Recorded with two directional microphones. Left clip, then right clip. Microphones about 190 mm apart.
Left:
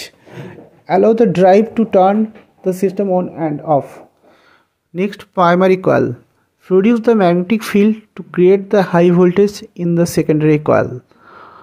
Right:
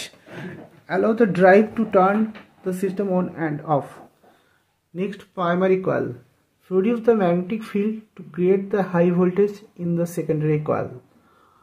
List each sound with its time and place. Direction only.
0.0 s a sound: 40° left (ahead or behind)
2.6 s speech: 40° left (ahead or behind)
3.2 s speech: 25° left (ahead or behind)
4.9 s speech: 50° left (ahead or behind)